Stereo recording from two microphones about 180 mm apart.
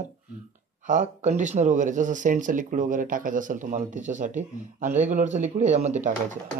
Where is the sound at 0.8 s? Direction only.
45° right (ahead or behind).